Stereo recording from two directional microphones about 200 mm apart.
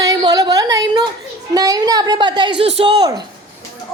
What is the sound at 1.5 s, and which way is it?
Speech, 20° right (ahead or behind).